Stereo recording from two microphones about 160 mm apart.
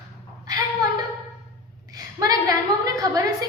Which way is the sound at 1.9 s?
25° right (ahead or behind).